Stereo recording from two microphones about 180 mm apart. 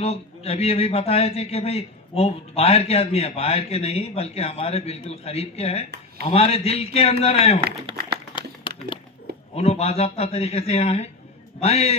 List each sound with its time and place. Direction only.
0.0 s a man's voice: 35° left (ahead or behind)
8.4 s a sound: 25° left (ahead or behind)
9.6 s a man's voice: 35° left (ahead or behind)